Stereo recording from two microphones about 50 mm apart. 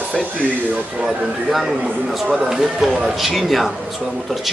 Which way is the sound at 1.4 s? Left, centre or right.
Centre.